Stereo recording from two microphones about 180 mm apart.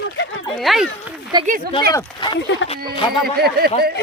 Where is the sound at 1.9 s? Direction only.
25° left (ahead or behind).